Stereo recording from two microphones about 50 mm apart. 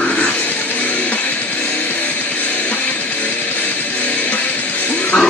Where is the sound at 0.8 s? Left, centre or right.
Left.